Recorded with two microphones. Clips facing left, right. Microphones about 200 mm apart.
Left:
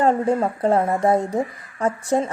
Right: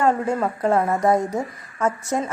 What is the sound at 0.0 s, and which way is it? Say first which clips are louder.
A woman's voice: left 2 dB; 30° left (ahead or behind).